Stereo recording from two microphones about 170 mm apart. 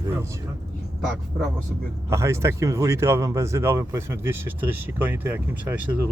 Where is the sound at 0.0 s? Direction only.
15° right (ahead or behind).